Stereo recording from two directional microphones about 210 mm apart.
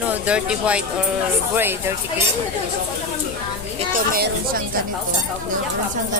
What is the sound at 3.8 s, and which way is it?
Speech, 40° right (ahead or behind).